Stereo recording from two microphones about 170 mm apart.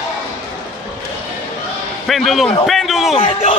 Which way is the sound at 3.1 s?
35° left (ahead or behind).